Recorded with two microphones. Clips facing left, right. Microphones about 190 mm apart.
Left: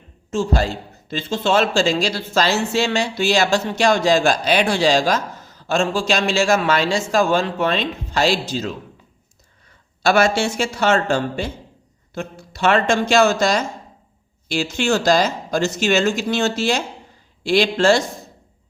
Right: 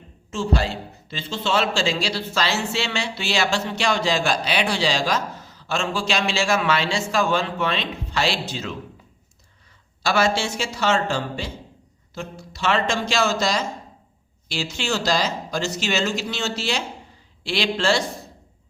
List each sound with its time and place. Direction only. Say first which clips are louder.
0.3 s a man's voice: left 4 dB; 45° left (ahead or behind)
10.0 s a man's voice: left 5 dB; 50° left (ahead or behind)